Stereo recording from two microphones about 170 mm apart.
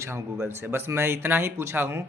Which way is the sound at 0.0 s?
15° right (ahead or behind).